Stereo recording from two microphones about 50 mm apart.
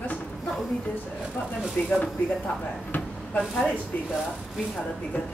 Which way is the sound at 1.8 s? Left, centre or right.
Left.